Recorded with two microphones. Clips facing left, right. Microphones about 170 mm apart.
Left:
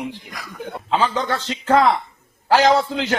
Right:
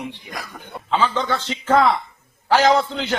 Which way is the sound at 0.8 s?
10° left (ahead or behind).